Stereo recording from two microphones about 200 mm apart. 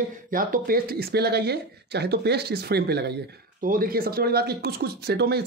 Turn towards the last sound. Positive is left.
turn(degrees=-55)  # may be behind; listen again after turning